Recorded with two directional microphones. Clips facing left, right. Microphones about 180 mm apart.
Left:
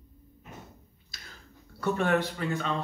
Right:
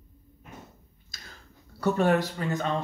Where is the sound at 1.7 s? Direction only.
35° right (ahead or behind).